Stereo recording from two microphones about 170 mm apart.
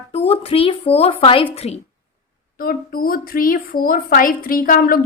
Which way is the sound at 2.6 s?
60° left (ahead or behind).